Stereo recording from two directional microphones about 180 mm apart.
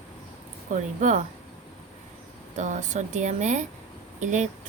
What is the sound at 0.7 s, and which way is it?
Speech, 45° right (ahead or behind).